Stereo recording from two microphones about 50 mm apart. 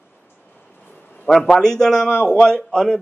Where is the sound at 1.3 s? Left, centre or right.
Centre.